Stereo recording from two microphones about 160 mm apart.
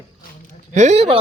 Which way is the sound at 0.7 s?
45° right (ahead or behind).